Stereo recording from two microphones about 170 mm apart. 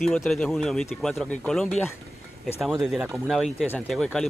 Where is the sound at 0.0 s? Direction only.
Centre (ahead or behind).